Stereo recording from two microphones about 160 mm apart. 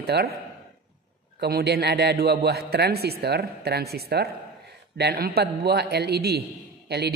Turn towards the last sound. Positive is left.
turn(degrees=-90)